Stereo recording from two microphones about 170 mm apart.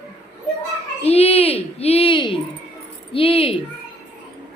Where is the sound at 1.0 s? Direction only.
35° left (ahead or behind).